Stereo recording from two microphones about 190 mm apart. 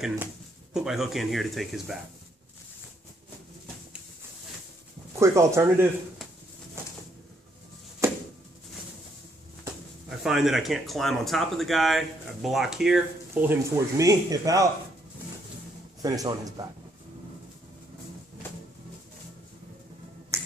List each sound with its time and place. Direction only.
0.7 s speech: centre (ahead or behind)
5.2 s speech: 15° right (ahead or behind)
8.0 s a sound: 15° right (ahead or behind)
10.0 s speech: centre (ahead or behind); by 14.7 s 20° right (ahead or behind)
16.0 s speech: 20° right (ahead or behind)
20.3 s finger snapping: 15° right (ahead or behind)